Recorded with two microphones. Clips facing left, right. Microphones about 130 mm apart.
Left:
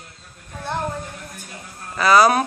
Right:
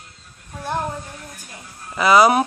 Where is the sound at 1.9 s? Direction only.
20° right (ahead or behind).